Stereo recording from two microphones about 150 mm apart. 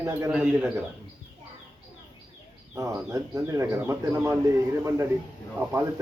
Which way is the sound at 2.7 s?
20° right (ahead or behind).